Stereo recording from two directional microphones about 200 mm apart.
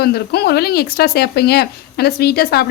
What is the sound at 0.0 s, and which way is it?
Speech, 55° left (ahead or behind).